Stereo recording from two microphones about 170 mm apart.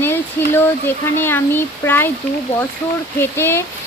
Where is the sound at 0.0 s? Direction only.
15° left (ahead or behind).